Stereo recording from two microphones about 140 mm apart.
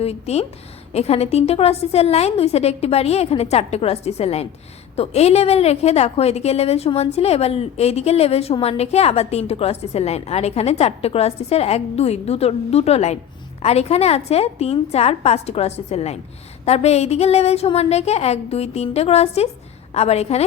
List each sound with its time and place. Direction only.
0.0 s a woman's voice: 45° left (ahead or behind)